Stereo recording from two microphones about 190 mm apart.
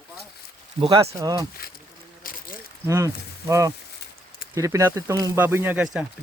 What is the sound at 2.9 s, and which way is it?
Speech, 15° right (ahead or behind).